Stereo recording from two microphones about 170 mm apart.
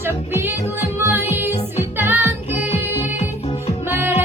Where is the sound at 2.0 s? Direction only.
10° right (ahead or behind).